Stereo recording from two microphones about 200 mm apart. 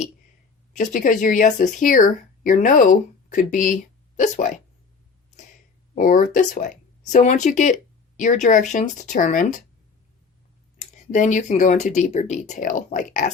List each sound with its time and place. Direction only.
0.7 s speech: 40° left (ahead or behind)
5.9 s speech: 40° left (ahead or behind)
10.8 s speech: 35° left (ahead or behind)